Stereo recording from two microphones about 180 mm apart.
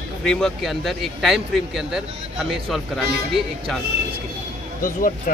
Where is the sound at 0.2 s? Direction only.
5° left (ahead or behind).